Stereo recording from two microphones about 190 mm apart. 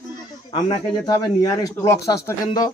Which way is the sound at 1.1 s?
15° left (ahead or behind).